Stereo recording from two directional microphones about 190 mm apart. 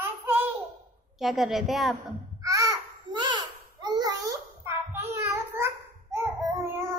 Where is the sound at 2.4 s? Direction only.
15° right (ahead or behind).